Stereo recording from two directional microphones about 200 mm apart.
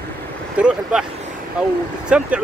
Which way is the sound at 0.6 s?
5° right (ahead or behind).